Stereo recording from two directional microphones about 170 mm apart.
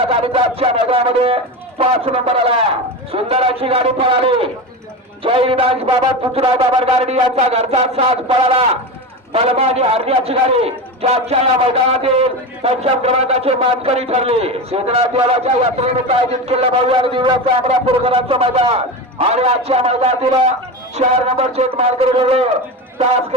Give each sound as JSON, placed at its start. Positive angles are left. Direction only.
{"t": 0.1, "sound": "a man's voice", "side_deg": -35}